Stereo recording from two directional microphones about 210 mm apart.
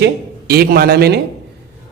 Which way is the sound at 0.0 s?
50° right (ahead or behind).